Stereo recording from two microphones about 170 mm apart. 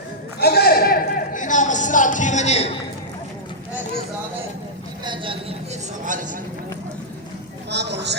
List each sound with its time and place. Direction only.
0.3 s a sound: 70° left (ahead or behind); by 2.7 s 40° left (ahead or behind)
5.0 s a man's voice: 30° right (ahead or behind)
7.7 s speech: 90° right